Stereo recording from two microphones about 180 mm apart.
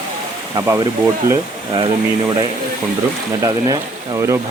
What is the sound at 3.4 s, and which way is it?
Speech, 20° right (ahead or behind).